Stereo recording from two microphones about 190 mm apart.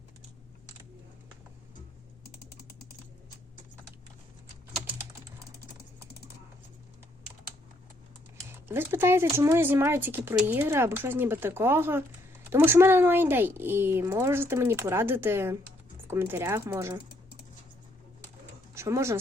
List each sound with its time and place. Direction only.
2.2 s typing: 55° left (ahead or behind)
8.4 s speech: 10° right (ahead or behind)
18.7 s speech: 15° right (ahead or behind)